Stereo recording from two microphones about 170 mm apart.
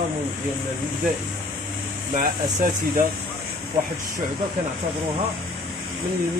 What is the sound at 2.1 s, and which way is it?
Speech, 50° right (ahead or behind).